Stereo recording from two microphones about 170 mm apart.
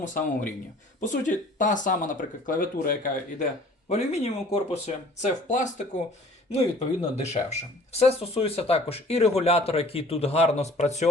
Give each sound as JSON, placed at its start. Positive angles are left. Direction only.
{"t": 0.0, "sound": "speech", "side_deg": 50}
{"t": 3.8, "sound": "speech", "side_deg": 40}